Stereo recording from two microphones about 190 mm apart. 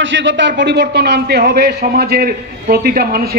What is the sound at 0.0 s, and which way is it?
A man's voice, 75° right (ahead or behind).